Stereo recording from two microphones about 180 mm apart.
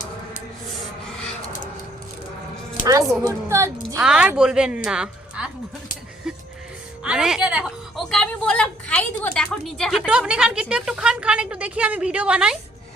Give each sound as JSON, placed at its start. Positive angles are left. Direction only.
{"t": 3.2, "sound": "a woman's voice", "side_deg": -15}
{"t": 3.9, "sound": "a woman's voice", "side_deg": -5}
{"t": 6.3, "sound": "music", "side_deg": -5}
{"t": 7.0, "sound": "a woman's voice", "side_deg": -5}